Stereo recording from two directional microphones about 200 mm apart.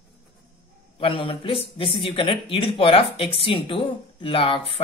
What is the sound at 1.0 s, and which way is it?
Speech, 25° left (ahead or behind).